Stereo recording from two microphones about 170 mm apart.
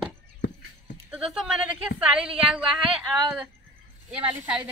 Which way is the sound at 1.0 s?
Centre (ahead or behind).